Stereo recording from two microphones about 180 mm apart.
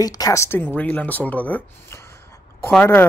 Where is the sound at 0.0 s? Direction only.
20° left (ahead or behind).